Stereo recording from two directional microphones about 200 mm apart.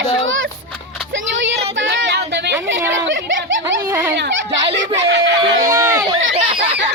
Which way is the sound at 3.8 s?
15° right (ahead or behind).